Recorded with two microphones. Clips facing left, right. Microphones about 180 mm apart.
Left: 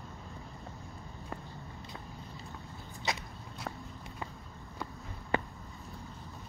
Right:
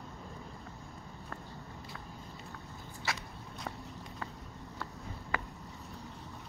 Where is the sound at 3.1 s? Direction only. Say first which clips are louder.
Left 3 dB; 20° left (ahead or behind).